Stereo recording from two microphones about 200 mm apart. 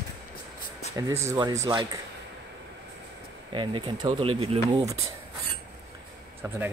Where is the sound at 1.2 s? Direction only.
20° right (ahead or behind).